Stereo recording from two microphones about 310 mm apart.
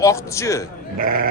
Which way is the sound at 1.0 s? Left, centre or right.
Right.